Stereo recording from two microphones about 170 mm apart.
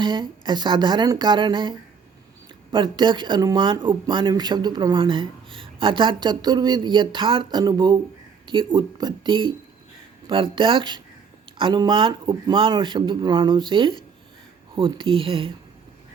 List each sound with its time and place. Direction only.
0.0 s speech: 25° right (ahead or behind)
2.7 s speech: 25° right (ahead or behind)